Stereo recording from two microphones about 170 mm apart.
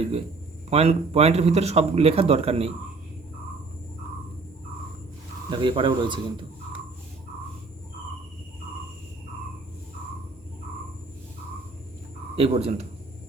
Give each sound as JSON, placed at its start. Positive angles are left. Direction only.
{"t": 0.7, "sound": "a man's voice", "side_deg": -35}
{"t": 5.5, "sound": "speech", "side_deg": -30}
{"t": 12.4, "sound": "a man's voice", "side_deg": -35}